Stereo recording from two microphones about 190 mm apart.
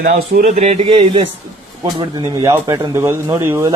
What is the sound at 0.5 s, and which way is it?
Speech, 35° right (ahead or behind).